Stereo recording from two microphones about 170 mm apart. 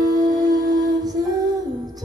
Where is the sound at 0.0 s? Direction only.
20° right (ahead or behind).